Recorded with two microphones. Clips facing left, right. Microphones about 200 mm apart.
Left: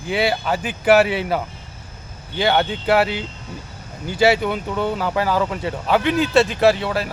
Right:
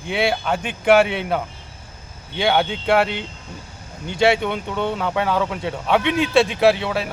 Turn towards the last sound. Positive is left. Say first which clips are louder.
# even
turn(degrees=0)  # may be behind; listen again after turning